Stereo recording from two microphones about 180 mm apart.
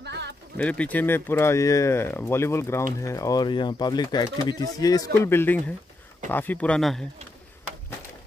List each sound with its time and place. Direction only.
0.0 s bird: 70° right (ahead or behind)
0.6 s speech: 5° left (ahead or behind)